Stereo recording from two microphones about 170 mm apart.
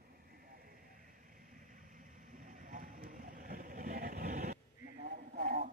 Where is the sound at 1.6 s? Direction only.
50° right (ahead or behind).